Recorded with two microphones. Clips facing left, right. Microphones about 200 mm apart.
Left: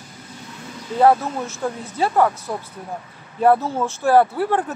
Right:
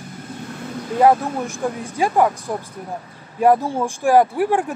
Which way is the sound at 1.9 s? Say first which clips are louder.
Right 1 dB; 15° right (ahead or behind).